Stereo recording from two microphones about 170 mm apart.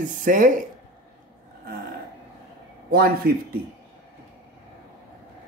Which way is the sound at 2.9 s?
60° right (ahead or behind).